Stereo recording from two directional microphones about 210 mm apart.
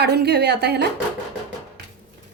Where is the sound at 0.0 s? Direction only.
50° right (ahead or behind).